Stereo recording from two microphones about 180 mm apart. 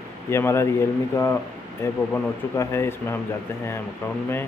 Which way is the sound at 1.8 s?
15° left (ahead or behind).